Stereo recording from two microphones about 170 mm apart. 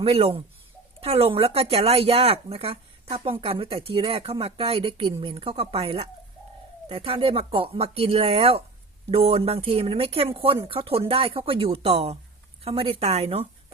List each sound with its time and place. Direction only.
0.0 s speech: 35° right (ahead or behind)